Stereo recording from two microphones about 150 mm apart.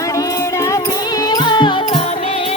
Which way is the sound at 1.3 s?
30° left (ahead or behind).